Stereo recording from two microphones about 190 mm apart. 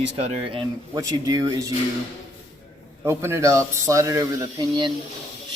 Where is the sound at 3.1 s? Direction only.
15° right (ahead or behind).